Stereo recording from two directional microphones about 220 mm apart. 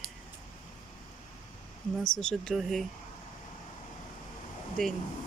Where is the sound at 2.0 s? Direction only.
5° left (ahead or behind).